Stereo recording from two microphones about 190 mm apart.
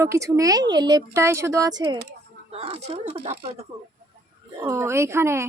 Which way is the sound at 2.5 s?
30° right (ahead or behind).